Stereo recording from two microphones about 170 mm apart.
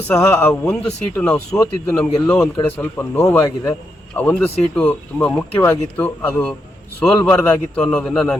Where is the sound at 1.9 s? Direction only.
5° left (ahead or behind).